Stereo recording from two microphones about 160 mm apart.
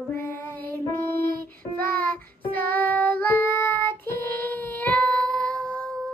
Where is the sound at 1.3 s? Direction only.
65° right (ahead or behind).